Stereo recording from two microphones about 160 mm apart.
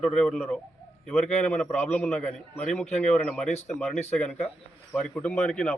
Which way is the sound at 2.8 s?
45° left (ahead or behind).